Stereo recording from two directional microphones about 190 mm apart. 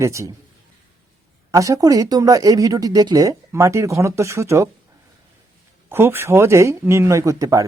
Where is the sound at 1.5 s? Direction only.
15° right (ahead or behind).